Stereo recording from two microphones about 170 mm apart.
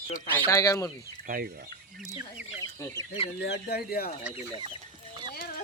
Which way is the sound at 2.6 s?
20° left (ahead or behind).